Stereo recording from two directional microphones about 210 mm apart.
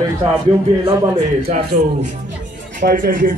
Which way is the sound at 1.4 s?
35° right (ahead or behind).